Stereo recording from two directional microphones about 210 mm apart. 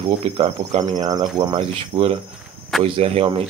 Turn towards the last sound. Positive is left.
turn(degrees=-25)  # may be behind; listen again after turning